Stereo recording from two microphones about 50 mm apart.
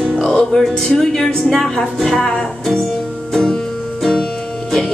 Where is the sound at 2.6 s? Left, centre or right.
Centre.